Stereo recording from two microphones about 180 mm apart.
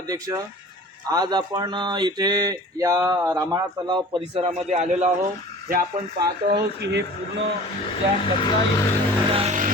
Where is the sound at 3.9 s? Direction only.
30° right (ahead or behind).